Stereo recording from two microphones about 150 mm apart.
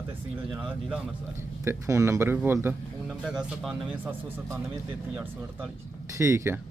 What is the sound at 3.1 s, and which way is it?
Speech, 5° right (ahead or behind).